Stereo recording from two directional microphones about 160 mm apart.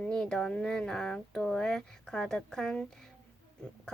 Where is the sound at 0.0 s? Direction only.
5° left (ahead or behind).